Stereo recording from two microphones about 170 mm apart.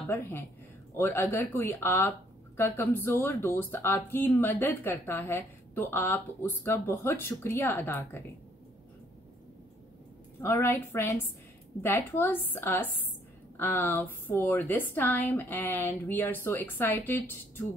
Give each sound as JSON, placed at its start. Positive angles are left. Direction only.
{"t": 0.1, "sound": "speech", "side_deg": 10}
{"t": 10.4, "sound": "speech", "side_deg": 15}